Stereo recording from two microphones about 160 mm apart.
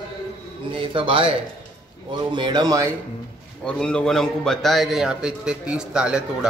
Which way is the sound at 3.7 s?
5° left (ahead or behind).